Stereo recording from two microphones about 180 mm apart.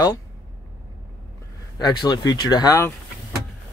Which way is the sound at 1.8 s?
25° left (ahead or behind).